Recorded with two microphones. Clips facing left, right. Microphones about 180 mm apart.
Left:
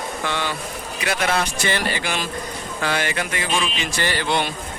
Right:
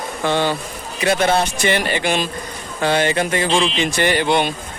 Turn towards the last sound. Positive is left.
turn(degrees=-20)  # may be behind; listen again after turning